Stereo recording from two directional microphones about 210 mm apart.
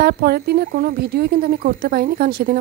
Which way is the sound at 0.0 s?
50° right (ahead or behind).